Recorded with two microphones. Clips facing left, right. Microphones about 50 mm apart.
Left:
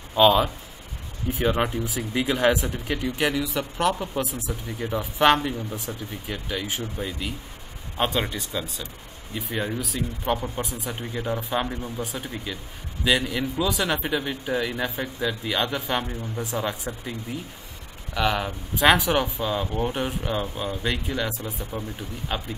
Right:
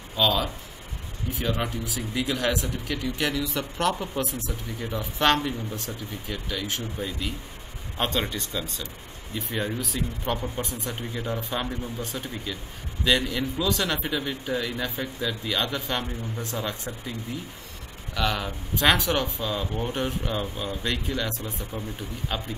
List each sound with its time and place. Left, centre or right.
0.1 s speech: left
18.1 s speech: centre